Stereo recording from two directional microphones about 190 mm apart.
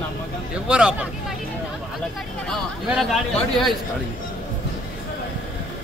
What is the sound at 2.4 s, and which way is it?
Speech, centre (ahead or behind).